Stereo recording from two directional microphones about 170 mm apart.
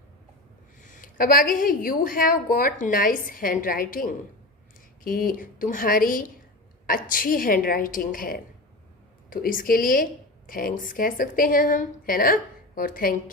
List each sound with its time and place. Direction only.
0.9 s a woman's voice: 50° left (ahead or behind)